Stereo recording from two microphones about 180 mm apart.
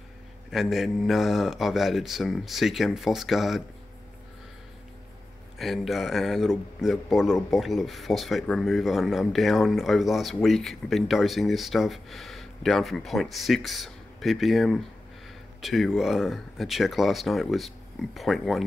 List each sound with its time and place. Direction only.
0.5 s speech: centre (ahead or behind)
5.6 s speech: centre (ahead or behind)